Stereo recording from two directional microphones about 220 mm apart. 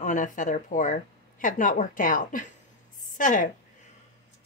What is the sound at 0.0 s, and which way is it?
A woman's voice, 35° left (ahead or behind).